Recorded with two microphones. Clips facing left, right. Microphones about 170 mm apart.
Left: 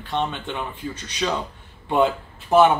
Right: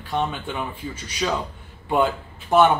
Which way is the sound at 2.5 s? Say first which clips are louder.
Left 1 dB; centre (ahead or behind).